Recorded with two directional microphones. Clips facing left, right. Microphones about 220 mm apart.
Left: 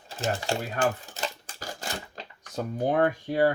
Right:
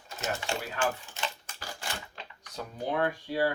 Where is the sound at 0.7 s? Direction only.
40° left (ahead or behind).